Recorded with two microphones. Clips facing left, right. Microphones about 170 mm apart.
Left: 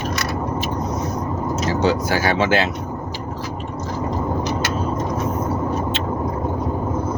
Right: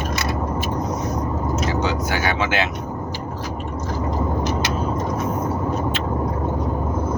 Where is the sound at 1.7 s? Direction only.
35° left (ahead or behind).